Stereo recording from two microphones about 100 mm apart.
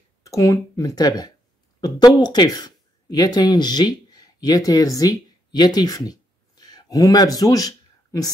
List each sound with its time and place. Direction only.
0.2 s speech: 35° left (ahead or behind)